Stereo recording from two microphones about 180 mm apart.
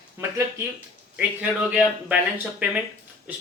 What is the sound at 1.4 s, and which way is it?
Speech, 10° right (ahead or behind).